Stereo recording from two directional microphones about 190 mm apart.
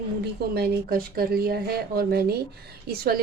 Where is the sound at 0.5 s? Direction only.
55° right (ahead or behind).